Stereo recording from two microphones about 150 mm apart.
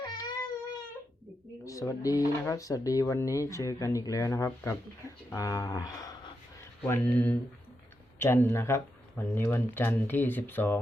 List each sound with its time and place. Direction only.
0.0 s a sound: 25° left (ahead or behind)
1.6 s speech: 20° left (ahead or behind)
6.8 s speech: 15° left (ahead or behind)